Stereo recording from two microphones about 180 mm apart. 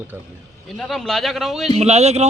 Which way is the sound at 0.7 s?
Centre (ahead or behind).